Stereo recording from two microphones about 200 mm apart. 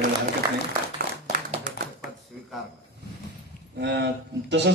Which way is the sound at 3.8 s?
60° right (ahead or behind).